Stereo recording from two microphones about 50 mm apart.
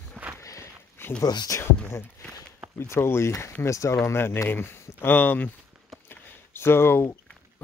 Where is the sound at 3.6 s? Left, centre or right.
Left.